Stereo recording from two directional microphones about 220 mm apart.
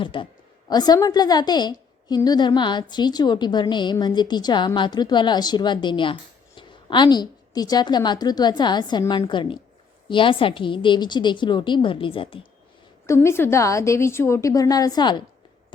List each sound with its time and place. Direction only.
0.0 s a woman's voice: 20° left (ahead or behind)
13.1 s a woman's voice: 10° left (ahead or behind)